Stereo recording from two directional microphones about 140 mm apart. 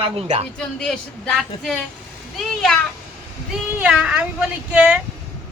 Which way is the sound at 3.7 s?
10° right (ahead or behind).